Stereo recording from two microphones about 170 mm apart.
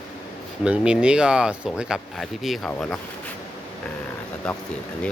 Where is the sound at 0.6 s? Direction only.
5° right (ahead or behind).